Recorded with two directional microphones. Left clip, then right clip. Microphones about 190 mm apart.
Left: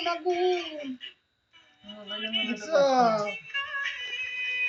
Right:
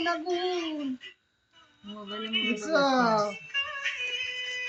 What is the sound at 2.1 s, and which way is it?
Speech, 5° left (ahead or behind).